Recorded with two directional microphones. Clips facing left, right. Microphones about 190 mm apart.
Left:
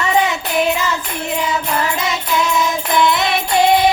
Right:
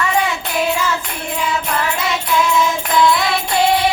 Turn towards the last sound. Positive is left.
turn(degrees=20)  # may be behind; listen again after turning